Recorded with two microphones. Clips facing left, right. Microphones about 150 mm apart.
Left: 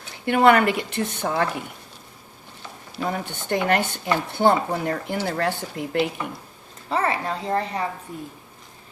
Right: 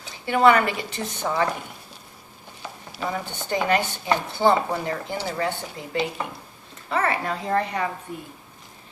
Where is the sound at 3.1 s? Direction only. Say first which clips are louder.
Left 2 dB; 60° left (ahead or behind).